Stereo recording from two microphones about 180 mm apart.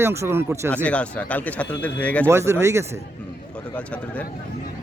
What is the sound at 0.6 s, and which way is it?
Speech, 10° left (ahead or behind).